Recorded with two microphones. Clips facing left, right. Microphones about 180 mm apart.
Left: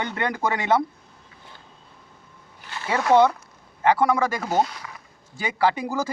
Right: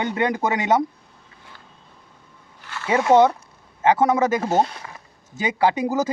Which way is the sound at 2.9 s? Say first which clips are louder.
Right 2 dB; 20° right (ahead or behind).